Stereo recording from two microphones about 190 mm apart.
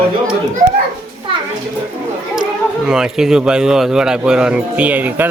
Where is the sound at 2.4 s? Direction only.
5° right (ahead or behind).